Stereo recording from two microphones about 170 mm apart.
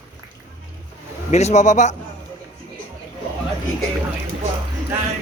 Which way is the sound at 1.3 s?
40° left (ahead or behind).